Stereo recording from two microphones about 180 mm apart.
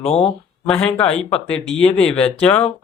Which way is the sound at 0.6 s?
5° left (ahead or behind).